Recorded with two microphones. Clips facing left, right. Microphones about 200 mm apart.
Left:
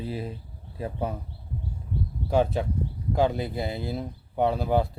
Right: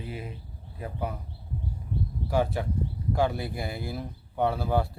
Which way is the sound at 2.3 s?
20° left (ahead or behind).